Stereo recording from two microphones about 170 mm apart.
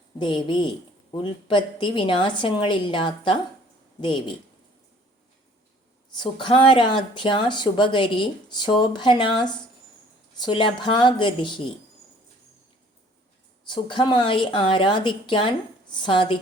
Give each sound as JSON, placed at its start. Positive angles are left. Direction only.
{"t": 0.2, "sound": "speech", "side_deg": 30}
{"t": 6.1, "sound": "speech", "side_deg": 30}
{"t": 13.7, "sound": "speech", "side_deg": 30}